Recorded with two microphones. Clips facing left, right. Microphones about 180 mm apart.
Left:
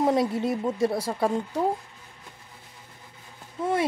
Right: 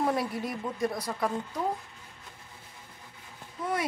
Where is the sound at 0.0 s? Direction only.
20° left (ahead or behind).